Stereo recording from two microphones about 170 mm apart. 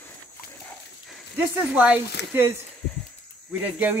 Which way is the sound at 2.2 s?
80° left.